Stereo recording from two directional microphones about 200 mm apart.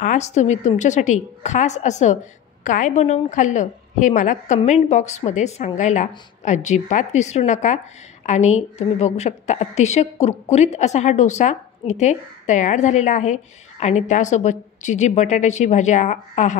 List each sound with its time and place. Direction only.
0.0 s a woman's voice: 35° left (ahead or behind)